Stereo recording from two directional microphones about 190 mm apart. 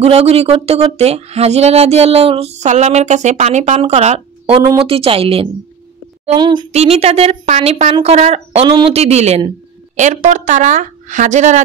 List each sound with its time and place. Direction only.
0.0 s speech: 35° right (ahead or behind)
4.6 s a woman's voice: 25° right (ahead or behind); by 11.6 s 40° right (ahead or behind)